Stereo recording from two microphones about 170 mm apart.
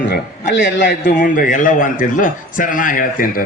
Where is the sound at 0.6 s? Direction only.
90° left.